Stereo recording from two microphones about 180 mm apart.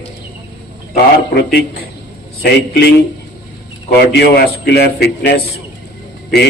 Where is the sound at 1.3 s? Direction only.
65° left (ahead or behind).